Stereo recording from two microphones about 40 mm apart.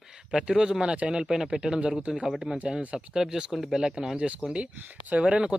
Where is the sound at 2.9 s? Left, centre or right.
Centre.